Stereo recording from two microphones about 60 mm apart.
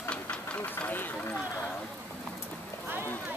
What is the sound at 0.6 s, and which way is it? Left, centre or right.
Vehicle, left.